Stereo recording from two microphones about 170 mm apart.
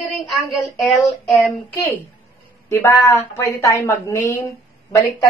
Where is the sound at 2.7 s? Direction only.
15° left (ahead or behind).